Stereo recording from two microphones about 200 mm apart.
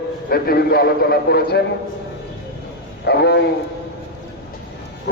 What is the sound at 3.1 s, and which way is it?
Speech, 55° left (ahead or behind).